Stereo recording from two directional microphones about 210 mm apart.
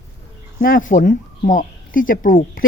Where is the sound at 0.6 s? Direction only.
40° left (ahead or behind).